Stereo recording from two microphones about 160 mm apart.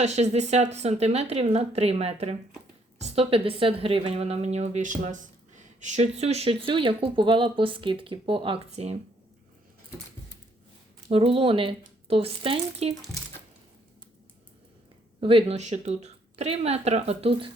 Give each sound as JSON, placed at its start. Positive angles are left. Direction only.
{"t": 0.0, "sound": "a woman's voice", "side_deg": -45}
{"t": 11.1, "sound": "a woman's voice", "side_deg": -35}
{"t": 15.2, "sound": "a woman's voice", "side_deg": -35}